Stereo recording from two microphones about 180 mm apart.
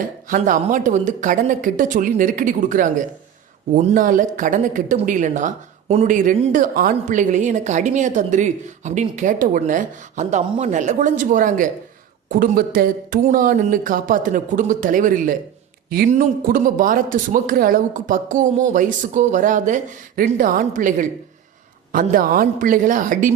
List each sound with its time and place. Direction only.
0.3 s speech: 45° right (ahead or behind)